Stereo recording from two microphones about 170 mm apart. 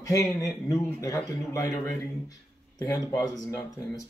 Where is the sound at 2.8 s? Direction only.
20° left (ahead or behind).